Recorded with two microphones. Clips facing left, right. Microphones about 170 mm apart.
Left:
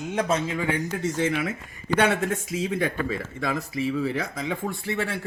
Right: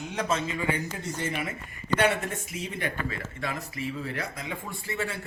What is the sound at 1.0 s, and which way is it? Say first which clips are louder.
Speech: left 7 dB; 90° left.